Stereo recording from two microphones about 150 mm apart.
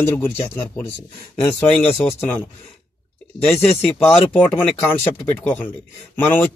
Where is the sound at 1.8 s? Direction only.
40° left (ahead or behind).